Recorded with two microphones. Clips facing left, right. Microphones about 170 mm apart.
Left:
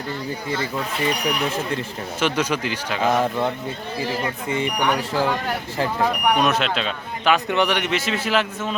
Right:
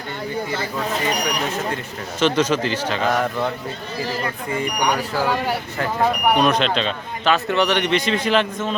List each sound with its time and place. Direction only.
2.2 s speech: 10° left (ahead or behind)
3.1 s speech: 25° left (ahead or behind)
4.8 s a man's voice: 10° right (ahead or behind); by 8.7 s 5° left (ahead or behind)